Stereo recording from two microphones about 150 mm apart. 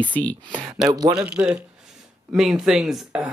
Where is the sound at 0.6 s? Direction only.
Centre (ahead or behind).